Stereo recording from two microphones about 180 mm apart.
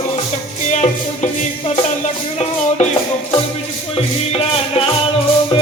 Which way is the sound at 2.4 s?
35° left (ahead or behind).